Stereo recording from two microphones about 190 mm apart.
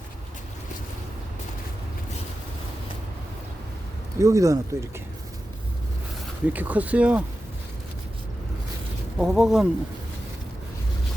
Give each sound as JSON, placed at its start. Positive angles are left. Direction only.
{"t": 4.2, "sound": "speech", "side_deg": -15}
{"t": 6.5, "sound": "speech", "side_deg": -10}
{"t": 9.1, "sound": "speech", "side_deg": -5}